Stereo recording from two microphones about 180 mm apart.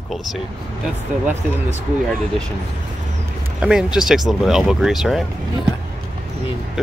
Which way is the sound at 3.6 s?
5° right (ahead or behind).